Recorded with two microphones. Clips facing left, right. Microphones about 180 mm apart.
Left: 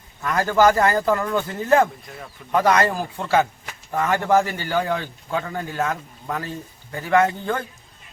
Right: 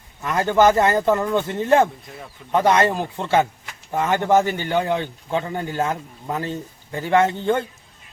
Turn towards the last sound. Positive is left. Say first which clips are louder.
# right 2 dB
turn(degrees=-25)  # may be behind; listen again after turning